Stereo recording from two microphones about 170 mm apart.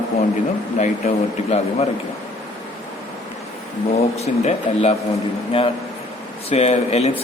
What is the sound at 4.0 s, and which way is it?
Speech, 40° left (ahead or behind).